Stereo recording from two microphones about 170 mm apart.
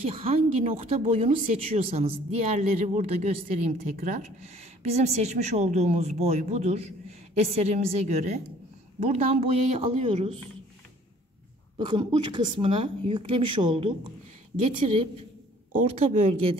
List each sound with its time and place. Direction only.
0.1 s a woman's voice: 35° right (ahead or behind)
11.9 s a woman's voice: 25° right (ahead or behind)
16.0 s a woman's voice: 35° right (ahead or behind)